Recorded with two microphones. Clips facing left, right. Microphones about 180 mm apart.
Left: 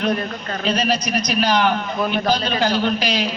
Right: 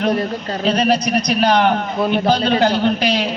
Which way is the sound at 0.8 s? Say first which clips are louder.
Right 5 dB; 60° right (ahead or behind).